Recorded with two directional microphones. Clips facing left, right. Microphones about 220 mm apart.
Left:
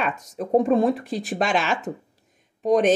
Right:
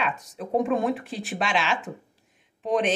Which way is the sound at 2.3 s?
40° left (ahead or behind).